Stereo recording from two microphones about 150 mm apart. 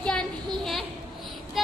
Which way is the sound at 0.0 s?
5° left (ahead or behind).